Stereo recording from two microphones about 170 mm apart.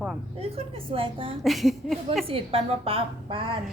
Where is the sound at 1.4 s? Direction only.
Centre (ahead or behind).